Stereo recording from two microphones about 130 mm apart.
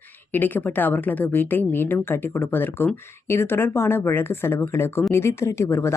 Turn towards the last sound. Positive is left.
turn(degrees=20)  # may be behind; listen again after turning